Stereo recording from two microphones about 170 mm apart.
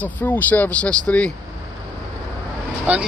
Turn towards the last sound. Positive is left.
turn(degrees=-10)  # may be behind; listen again after turning